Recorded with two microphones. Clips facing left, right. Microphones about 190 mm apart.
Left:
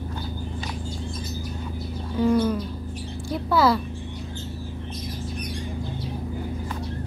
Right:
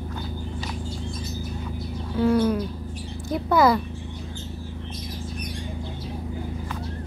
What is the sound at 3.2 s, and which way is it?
Speech, 20° right (ahead or behind).